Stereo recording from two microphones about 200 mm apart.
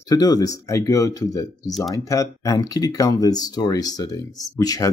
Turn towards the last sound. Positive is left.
turn(degrees=20)  # may be behind; listen again after turning